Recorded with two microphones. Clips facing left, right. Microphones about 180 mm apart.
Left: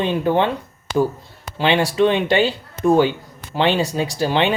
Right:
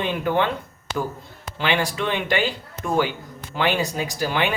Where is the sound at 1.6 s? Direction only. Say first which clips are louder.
Left 7 dB; 20° left (ahead or behind).